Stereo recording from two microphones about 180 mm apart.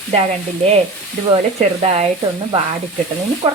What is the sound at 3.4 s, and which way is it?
Speech, 30° right (ahead or behind).